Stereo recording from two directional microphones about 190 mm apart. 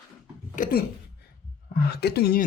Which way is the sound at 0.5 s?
45° left (ahead or behind).